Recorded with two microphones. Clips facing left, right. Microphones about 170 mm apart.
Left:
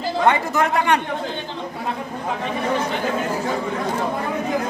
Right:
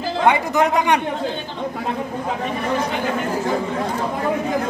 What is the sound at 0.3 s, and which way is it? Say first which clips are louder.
Speech: right 3 dB; 15° right (ahead or behind).